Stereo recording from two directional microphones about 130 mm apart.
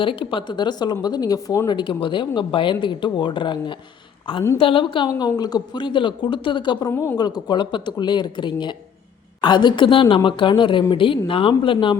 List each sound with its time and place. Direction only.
0.0 s a woman's voice: 40° left (ahead or behind)
6.9 s speech: 15° left (ahead or behind)
7.2 s speech: 30° left (ahead or behind)